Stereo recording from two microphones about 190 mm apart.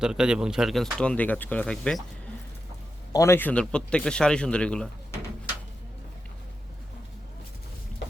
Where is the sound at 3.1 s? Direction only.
15° left (ahead or behind).